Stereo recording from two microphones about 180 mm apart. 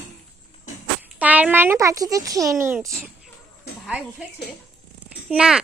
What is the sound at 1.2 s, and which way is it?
A child's voice, 10° right (ahead or behind).